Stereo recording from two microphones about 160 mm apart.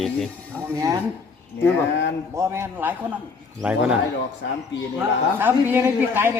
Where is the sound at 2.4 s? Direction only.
15° right (ahead or behind).